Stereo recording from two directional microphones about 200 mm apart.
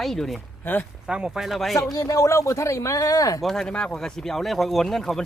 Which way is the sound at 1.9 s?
15° left (ahead or behind).